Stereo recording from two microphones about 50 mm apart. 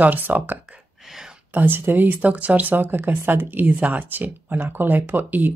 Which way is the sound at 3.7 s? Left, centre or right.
Right.